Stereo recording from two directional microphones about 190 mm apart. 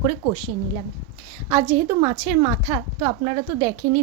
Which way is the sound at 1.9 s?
30° right (ahead or behind).